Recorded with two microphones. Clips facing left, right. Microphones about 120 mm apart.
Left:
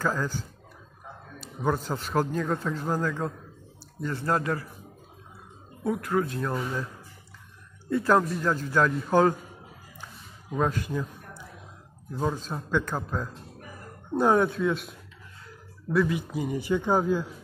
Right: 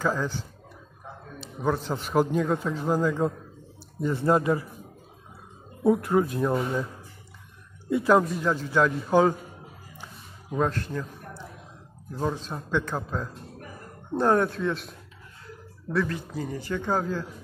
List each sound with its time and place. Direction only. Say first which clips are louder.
0.0 s a man's voice: right 1 dB; centre (ahead or behind)
1.6 s a man's voice: right 1 dB; centre (ahead or behind); by 4.6 s 20° right (ahead or behind)
5.9 s speech: right 5 dB; 25° right (ahead or behind)
7.9 s a man's voice: right 2 dB; 10° right (ahead or behind)
10.5 s a man's voice: even; 5° left (ahead or behind)
12.2 s a man's voice: even; centre (ahead or behind)